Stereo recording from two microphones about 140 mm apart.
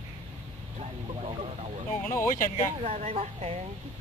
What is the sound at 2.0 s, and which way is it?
Speech, 20° left (ahead or behind).